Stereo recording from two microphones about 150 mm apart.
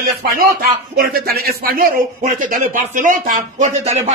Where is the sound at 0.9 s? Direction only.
90° right; by 3.9 s 50° right (ahead or behind).